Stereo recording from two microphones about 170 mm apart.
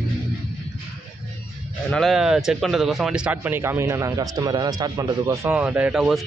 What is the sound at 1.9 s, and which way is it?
Speech, centre (ahead or behind).